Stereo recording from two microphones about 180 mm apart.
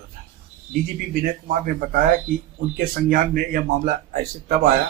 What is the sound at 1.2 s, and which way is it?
A man's voice, 50° right (ahead or behind).